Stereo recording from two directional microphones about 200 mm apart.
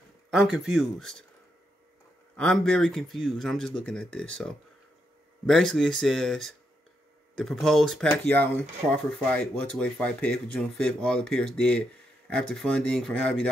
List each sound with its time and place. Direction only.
0.3 s speech: centre (ahead or behind)
2.3 s speech: 5° left (ahead or behind)